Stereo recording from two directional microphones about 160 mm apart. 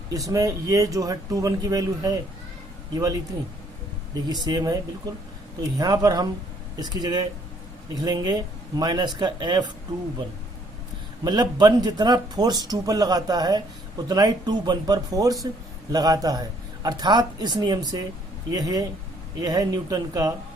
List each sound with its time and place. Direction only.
0.1 s speech: 20° right (ahead or behind)
4.3 s speech: 25° right (ahead or behind)
11.2 s speech: 25° right (ahead or behind)